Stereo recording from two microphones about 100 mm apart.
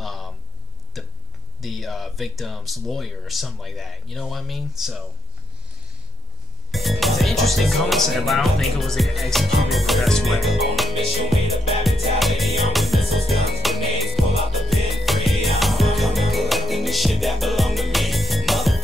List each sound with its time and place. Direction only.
0.0 s a sound: centre (ahead or behind)
1.6 s speech: centre (ahead or behind)
6.7 s speech: centre (ahead or behind)
11.8 s music: centre (ahead or behind)